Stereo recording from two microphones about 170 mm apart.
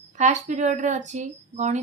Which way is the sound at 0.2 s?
45° right (ahead or behind).